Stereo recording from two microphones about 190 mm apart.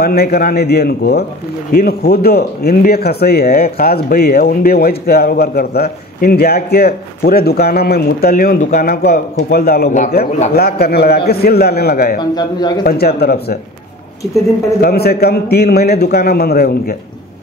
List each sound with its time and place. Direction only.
0.0 s a man's voice: 55° left (ahead or behind)
9.8 s a man's voice: 35° left (ahead or behind)
10.5 s a man's voice: 55° left (ahead or behind)
12.2 s a man's voice: 20° left (ahead or behind)
12.8 s a man's voice: 55° left (ahead or behind)
14.8 s a man's voice: 55° left (ahead or behind)